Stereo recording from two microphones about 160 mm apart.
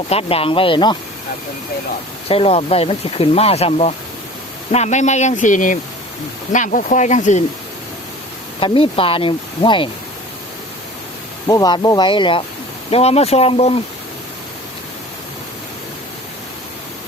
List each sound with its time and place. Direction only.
0.1 s speech: 35° left (ahead or behind)
2.2 s speech: 35° left (ahead or behind)
8.6 s speech: 35° left (ahead or behind)
11.4 s speech: 25° left (ahead or behind); by 13.7 s 40° left (ahead or behind)